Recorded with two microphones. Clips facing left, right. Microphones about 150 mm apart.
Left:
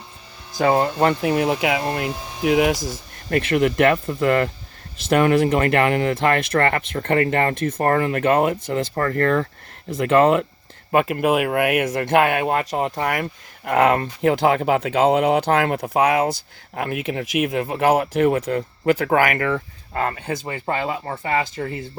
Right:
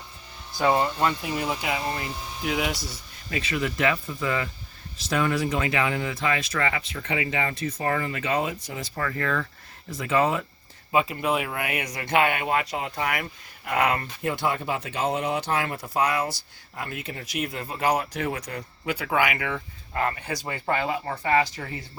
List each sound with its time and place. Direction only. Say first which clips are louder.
0.6 s speech: left 5 dB; 65° left (ahead or behind); by 20.1 s 45° left (ahead or behind)
20.4 s speech: left 2 dB; 20° left (ahead or behind)